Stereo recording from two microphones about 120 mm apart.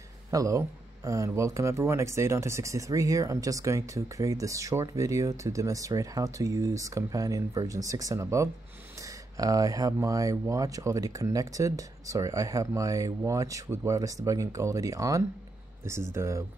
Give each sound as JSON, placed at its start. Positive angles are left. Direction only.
{"t": 0.3, "sound": "speech", "side_deg": -30}